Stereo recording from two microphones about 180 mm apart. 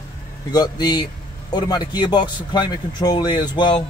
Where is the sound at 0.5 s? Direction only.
20° left (ahead or behind).